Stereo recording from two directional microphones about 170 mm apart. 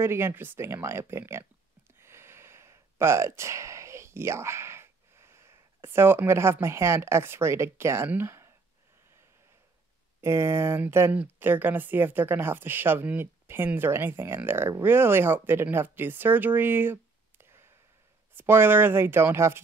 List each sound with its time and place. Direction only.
0.0 s speech: 15° right (ahead or behind)
2.0 s gasp: 15° right (ahead or behind)
10.2 s speech: 15° right (ahead or behind)